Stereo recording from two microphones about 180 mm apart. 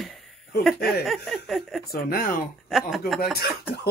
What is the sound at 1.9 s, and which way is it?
Speech, 55° left (ahead or behind).